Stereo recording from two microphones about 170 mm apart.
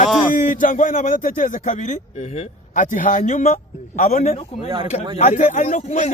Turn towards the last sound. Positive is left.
turn(degrees=45)  # may be behind; listen again after turning